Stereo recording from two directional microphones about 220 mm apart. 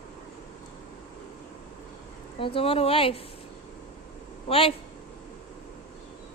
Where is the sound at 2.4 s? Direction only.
25° left (ahead or behind).